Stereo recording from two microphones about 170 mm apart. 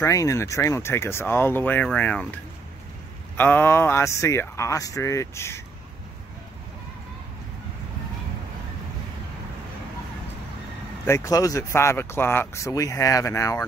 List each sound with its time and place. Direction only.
0.0 s speech: 20° left (ahead or behind)
3.3 s speech: 10° left (ahead or behind)
11.1 s speech: 20° left (ahead or behind)